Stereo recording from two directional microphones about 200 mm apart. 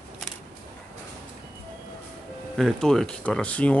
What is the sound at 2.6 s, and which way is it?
Speech, centre (ahead or behind).